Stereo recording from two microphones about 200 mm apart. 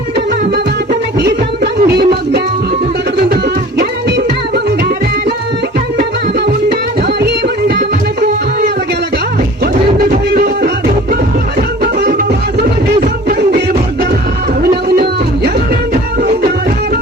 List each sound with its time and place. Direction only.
1.2 s music: 55° right (ahead or behind)
7.2 s music: 55° right (ahead or behind)
10.1 s music: 50° right (ahead or behind)